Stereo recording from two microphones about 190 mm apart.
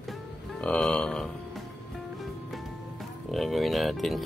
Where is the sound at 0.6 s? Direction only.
5° left (ahead or behind).